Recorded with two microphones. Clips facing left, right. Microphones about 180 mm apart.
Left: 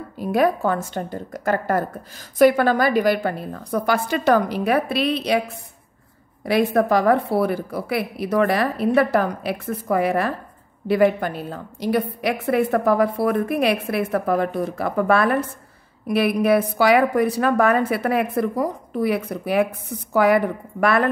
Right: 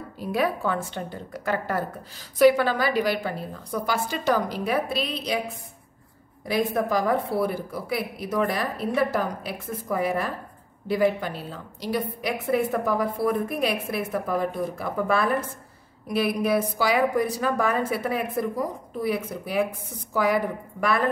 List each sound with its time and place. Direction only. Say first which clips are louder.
0.2 s a woman's voice: left 6 dB; 50° left (ahead or behind); by 5.4 s 65° left (ahead or behind)
6.4 s a woman's voice: left 6 dB; 70° left (ahead or behind)